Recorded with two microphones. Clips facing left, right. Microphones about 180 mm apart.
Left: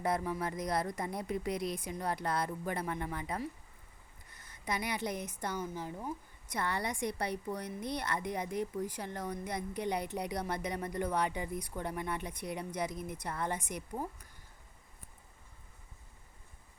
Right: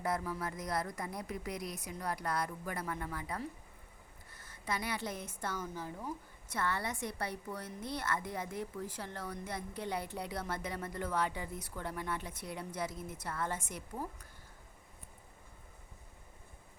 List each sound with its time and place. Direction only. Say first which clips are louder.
0.0 s a woman's voice: left 3 dB; 20° left (ahead or behind)
4.3 s a sound: left 1 dB; 20° left (ahead or behind)
5.4 s a woman's voice: left 2 dB; 15° left (ahead or behind)